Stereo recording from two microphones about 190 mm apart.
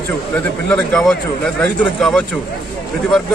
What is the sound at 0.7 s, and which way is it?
Speech, 5° left (ahead or behind).